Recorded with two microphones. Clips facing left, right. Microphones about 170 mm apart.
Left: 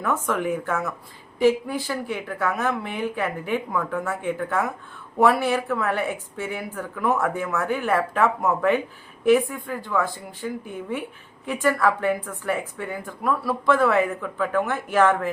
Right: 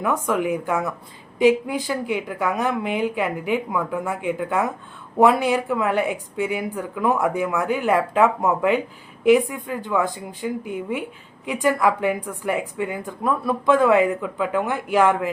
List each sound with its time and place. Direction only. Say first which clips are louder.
0.0 s a woman's voice: right 3 dB; 10° right (ahead or behind)